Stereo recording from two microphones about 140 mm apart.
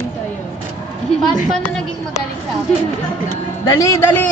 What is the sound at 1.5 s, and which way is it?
Speech, 5° left (ahead or behind).